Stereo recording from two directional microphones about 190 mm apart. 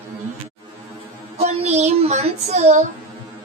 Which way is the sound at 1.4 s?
35° right (ahead or behind).